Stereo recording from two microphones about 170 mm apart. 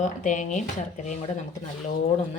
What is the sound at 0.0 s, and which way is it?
Speech, 50° left (ahead or behind).